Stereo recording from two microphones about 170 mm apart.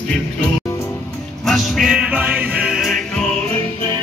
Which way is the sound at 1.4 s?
Centre (ahead or behind).